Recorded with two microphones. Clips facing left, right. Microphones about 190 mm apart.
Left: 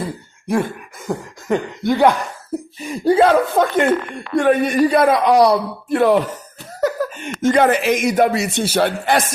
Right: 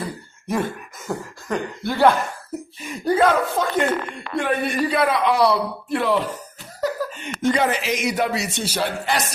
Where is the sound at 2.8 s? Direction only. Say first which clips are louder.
Left 5 dB; 30° left (ahead or behind).